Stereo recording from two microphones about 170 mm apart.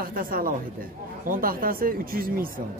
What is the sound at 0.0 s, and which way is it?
Speech, 55° right (ahead or behind).